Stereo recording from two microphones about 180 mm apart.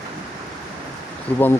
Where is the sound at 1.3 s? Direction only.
10° left (ahead or behind).